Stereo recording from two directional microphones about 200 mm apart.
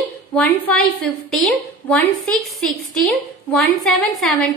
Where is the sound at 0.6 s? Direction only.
5° left (ahead or behind).